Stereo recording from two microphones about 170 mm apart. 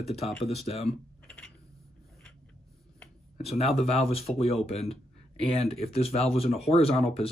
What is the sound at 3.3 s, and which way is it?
Speech, 35° left (ahead or behind).